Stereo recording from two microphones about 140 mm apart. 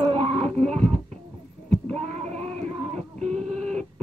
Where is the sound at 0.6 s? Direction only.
55° right (ahead or behind).